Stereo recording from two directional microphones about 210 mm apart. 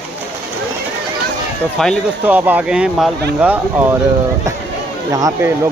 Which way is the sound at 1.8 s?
Centre (ahead or behind).